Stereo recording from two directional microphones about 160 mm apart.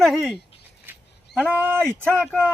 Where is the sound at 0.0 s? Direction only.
Centre (ahead or behind).